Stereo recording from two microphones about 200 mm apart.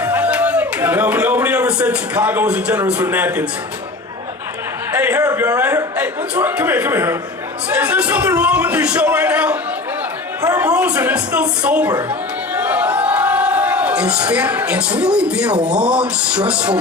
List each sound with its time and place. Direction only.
0.0 s a sound: 10° right (ahead or behind)
4.9 s a man's voice: 10° right (ahead or behind)
10.4 s a man's voice: 15° right (ahead or behind)
10.7 s a man's voice: 5° right (ahead or behind)